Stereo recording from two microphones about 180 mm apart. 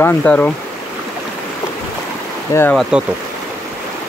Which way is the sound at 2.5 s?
15° left (ahead or behind).